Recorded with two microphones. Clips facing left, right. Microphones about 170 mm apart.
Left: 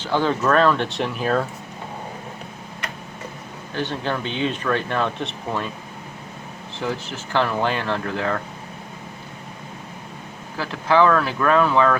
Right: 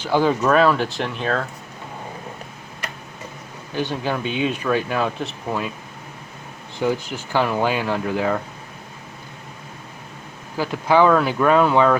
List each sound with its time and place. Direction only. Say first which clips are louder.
0.0 s speech: right 2 dB; 10° right (ahead or behind)
3.8 s speech: right 2 dB; 10° right (ahead or behind)
6.8 s speech: right 5 dB; 15° right (ahead or behind)
10.6 s speech: right 1 dB; 15° right (ahead or behind)